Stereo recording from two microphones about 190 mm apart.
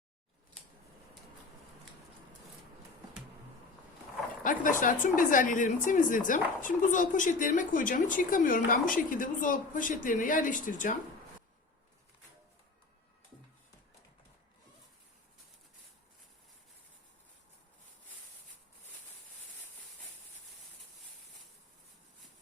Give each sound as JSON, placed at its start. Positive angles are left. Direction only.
{"t": 4.4, "sound": "a woman's voice", "side_deg": 45}